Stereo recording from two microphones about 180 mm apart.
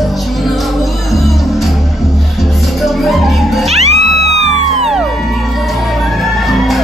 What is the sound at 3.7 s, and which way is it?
Music, 35° right (ahead or behind).